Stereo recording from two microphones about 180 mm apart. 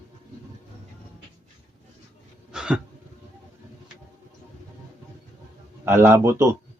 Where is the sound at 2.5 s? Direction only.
5° right (ahead or behind).